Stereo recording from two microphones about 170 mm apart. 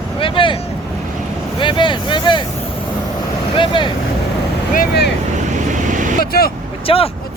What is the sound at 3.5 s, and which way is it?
Speech, 30° left (ahead or behind).